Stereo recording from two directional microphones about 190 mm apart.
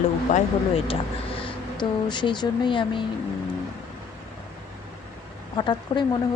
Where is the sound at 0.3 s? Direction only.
40° left (ahead or behind).